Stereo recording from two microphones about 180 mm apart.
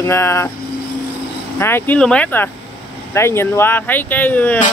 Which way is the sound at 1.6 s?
10° left (ahead or behind).